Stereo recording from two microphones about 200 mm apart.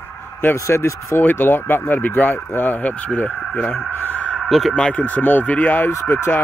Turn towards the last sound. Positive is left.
turn(degrees=10)  # may be behind; listen again after turning